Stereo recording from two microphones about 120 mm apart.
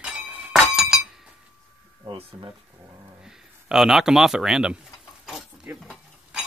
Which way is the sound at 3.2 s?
5° right (ahead or behind).